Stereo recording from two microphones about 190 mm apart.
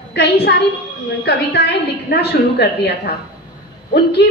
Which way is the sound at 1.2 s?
60° left (ahead or behind).